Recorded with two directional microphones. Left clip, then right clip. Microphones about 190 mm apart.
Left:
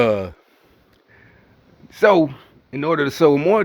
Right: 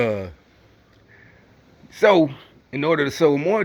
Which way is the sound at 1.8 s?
20° left (ahead or behind).